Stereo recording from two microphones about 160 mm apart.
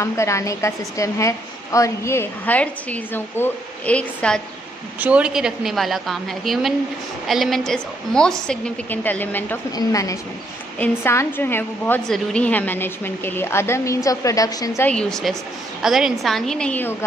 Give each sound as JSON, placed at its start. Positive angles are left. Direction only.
{"t": 0.0, "sound": "a woman's voice", "side_deg": 20}
{"t": 5.0, "sound": "a woman's voice", "side_deg": -5}
{"t": 14.9, "sound": "a woman's voice", "side_deg": 5}